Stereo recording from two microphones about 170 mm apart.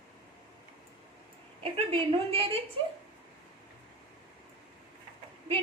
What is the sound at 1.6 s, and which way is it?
Speech, 35° right (ahead or behind).